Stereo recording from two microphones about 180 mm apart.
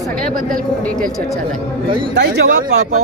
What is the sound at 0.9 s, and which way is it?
Speech, 5° left (ahead or behind).